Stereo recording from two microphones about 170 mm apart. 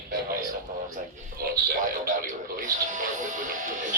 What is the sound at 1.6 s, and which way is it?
Music, 50° right (ahead or behind).